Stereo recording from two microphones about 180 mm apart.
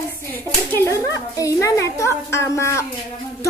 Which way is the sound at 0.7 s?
15° left (ahead or behind).